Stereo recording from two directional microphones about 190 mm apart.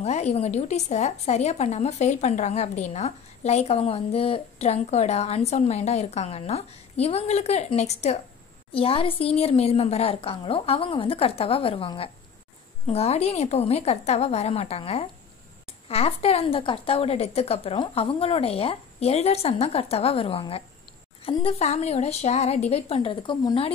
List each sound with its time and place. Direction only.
0.0 s a woman's voice: 35° left (ahead or behind)